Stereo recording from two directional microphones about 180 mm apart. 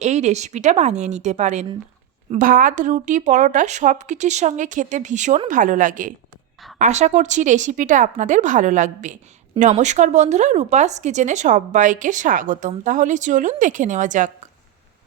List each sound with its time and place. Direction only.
0.0 s a woman's voice: 40° right (ahead or behind)